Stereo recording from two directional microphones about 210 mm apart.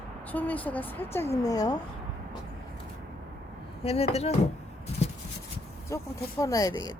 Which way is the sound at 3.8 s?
30° left (ahead or behind).